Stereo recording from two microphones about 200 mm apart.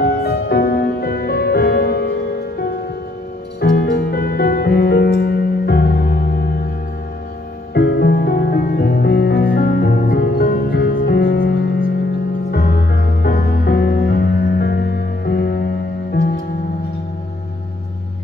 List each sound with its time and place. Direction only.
0.0 s music: 50° left (ahead or behind)
3.6 s music: 50° left (ahead or behind)
7.7 s music: 55° left (ahead or behind)